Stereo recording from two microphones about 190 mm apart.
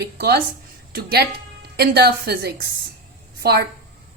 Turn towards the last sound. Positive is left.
turn(degrees=-55)  # may be behind; listen again after turning